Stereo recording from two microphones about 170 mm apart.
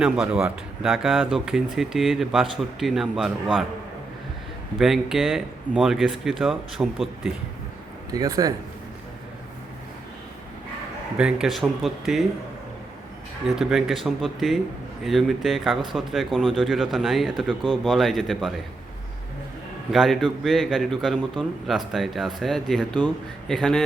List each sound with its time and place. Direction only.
0.0 s speech: 5° right (ahead or behind)
4.8 s speech: centre (ahead or behind)
8.1 s a man's voice: 20° right (ahead or behind)
11.2 s speech: 5° right (ahead or behind)
13.5 s speech: 5° right (ahead or behind)
19.9 s speech: centre (ahead or behind)